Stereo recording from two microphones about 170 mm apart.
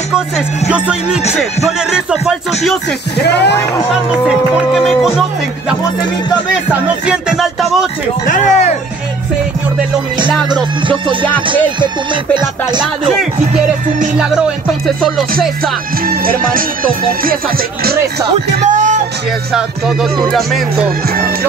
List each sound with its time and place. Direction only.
0.7 s speech: 5° right (ahead or behind)
1.9 s music: 5° right (ahead or behind)
3.2 s speech: 85° left
4.3 s music: centre (ahead or behind)
6.7 s music: 5° right (ahead or behind)
8.3 s speech: 45° left (ahead or behind)
10.5 s music: 30° right (ahead or behind)
15.0 s music: centre (ahead or behind)
16.1 s music: 55° right (ahead or behind)
18.7 s music: 45° right (ahead or behind)
20.2 s music: centre (ahead or behind)